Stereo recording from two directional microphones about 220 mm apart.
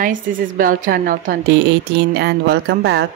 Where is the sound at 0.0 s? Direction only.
40° right (ahead or behind).